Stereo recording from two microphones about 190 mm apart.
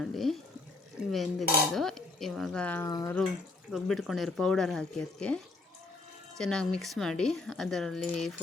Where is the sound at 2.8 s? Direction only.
15° left (ahead or behind).